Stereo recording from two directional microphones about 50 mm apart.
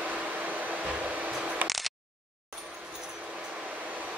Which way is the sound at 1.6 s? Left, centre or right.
Centre.